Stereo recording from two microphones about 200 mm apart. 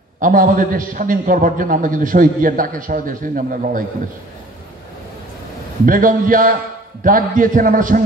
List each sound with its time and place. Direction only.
0.2 s a man's voice: 45° right (ahead or behind)
5.9 s a man's voice: 45° right (ahead or behind)